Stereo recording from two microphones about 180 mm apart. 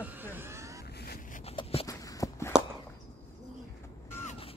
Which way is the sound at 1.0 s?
60° left (ahead or behind).